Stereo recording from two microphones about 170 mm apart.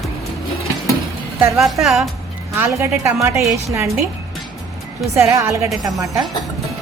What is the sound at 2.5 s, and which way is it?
A woman's voice, 15° right (ahead or behind).